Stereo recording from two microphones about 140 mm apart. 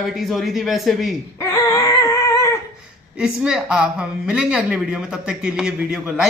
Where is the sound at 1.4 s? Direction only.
25° left (ahead or behind).